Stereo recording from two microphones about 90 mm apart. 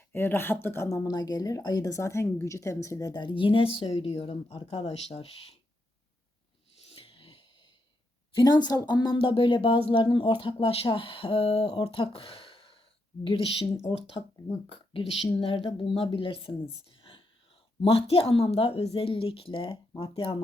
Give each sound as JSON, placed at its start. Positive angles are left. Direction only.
{"t": 0.1, "sound": "speech", "side_deg": 25}
{"t": 0.9, "sound": "a woman's voice", "side_deg": 40}
{"t": 3.8, "sound": "speech", "side_deg": 90}
{"t": 6.9, "sound": "a sound", "side_deg": 85}
{"t": 8.4, "sound": "a woman's voice", "side_deg": 50}
{"t": 9.1, "sound": "speech", "side_deg": 70}
{"t": 11.9, "sound": "a sound", "side_deg": 90}
{"t": 13.2, "sound": "speech", "side_deg": 75}
{"t": 14.7, "sound": "speech", "side_deg": 90}
{"t": 17.7, "sound": "speech", "side_deg": 90}